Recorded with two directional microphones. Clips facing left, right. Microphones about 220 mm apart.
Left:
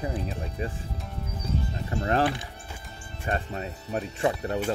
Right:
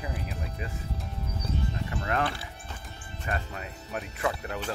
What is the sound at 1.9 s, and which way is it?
Speech, 30° left (ahead or behind).